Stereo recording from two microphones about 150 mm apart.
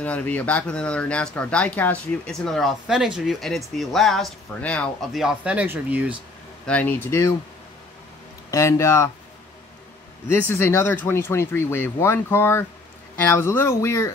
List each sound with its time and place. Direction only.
0.0 s speech: 10° left (ahead or behind); by 6.1 s 10° right (ahead or behind)
6.6 s speech: 10° left (ahead or behind)
8.5 s speech: 20° left (ahead or behind)
10.2 s speech: 15° left (ahead or behind)